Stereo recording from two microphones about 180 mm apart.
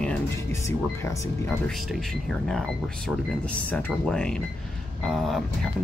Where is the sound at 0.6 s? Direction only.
15° left (ahead or behind).